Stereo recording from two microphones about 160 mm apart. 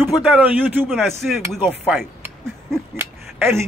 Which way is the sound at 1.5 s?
Centre (ahead or behind).